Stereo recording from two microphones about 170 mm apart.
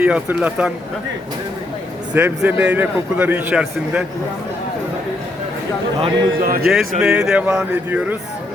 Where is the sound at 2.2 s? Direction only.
10° right (ahead or behind).